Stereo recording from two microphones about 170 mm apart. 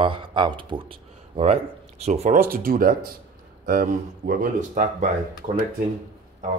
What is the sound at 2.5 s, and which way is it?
Speech, 60° right (ahead or behind).